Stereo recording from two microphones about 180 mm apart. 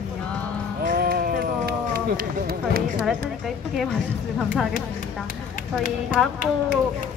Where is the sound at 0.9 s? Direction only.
55° right (ahead or behind).